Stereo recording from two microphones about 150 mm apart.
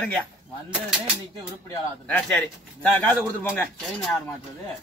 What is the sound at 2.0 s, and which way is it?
Speech, 5° left (ahead or behind).